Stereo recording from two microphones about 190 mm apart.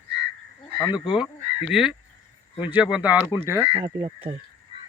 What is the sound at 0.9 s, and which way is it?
Speech, 5° right (ahead or behind).